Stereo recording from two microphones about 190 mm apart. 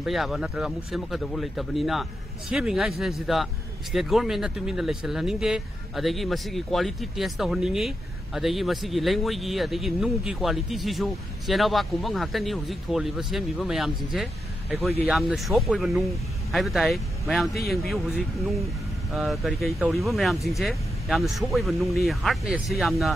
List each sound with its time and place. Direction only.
0.0 s speech: centre (ahead or behind)